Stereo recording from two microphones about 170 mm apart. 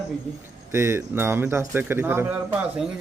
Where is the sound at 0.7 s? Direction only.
15° right (ahead or behind).